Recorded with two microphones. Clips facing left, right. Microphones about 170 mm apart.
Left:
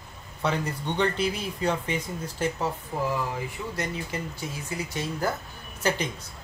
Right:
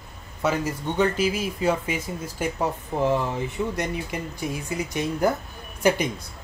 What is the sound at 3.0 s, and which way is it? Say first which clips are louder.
Speech: right 6 dB; 25° right (ahead or behind).